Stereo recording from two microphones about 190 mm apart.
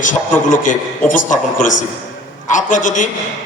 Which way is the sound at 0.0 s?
40° left (ahead or behind).